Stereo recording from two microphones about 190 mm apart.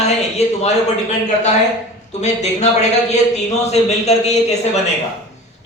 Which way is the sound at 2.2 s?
35° left (ahead or behind).